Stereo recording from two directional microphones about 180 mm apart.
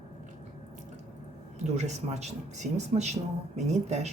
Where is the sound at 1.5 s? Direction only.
40° right (ahead or behind).